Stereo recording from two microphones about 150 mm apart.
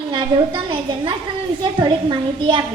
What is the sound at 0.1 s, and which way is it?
A woman's voice, 35° right (ahead or behind).